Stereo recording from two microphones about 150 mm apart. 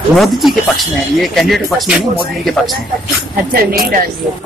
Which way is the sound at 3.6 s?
75° right (ahead or behind).